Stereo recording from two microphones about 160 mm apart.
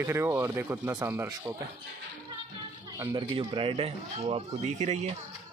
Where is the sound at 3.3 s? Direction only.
35° right (ahead or behind).